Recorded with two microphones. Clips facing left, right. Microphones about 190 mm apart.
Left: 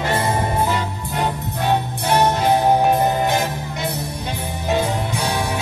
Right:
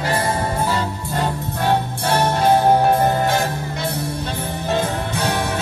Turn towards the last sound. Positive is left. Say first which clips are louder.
# even
turn(degrees=15)  # may be behind; listen again after turning